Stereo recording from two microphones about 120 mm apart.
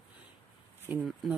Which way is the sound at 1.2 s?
Centre (ahead or behind).